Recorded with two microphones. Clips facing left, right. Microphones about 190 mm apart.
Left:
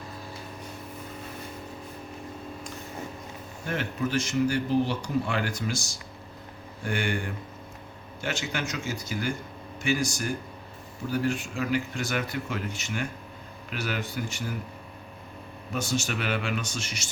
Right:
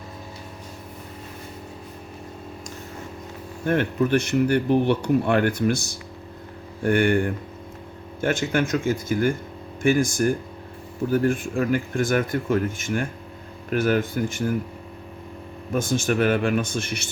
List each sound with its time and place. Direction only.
3.7 s speech: 60° right (ahead or behind)
15.7 s speech: 50° right (ahead or behind)